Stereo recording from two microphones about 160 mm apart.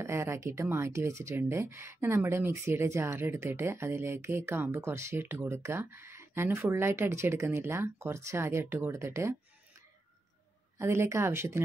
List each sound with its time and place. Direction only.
0.0 s speech: 15° right (ahead or behind)
10.8 s speech: 15° right (ahead or behind)